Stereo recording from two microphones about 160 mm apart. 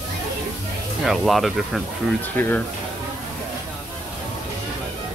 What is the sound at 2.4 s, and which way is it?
Speech, 10° left (ahead or behind).